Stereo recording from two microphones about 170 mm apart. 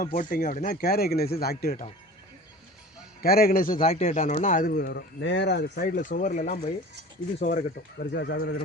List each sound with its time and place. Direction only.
0.0 s speech: 55° left (ahead or behind)
3.2 s speech: 60° left (ahead or behind)
3.8 s speech: 40° left (ahead or behind); by 5.8 s 85° left
5.8 s speech: 55° left (ahead or behind)
7.9 s speech: 85° left